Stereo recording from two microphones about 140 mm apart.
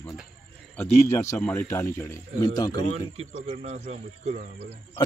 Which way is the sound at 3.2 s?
45° right (ahead or behind).